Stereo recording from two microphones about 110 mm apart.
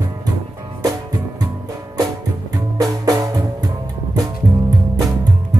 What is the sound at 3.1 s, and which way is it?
Music, 30° right (ahead or behind).